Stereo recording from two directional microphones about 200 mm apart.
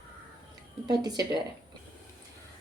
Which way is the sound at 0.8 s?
20° right (ahead or behind).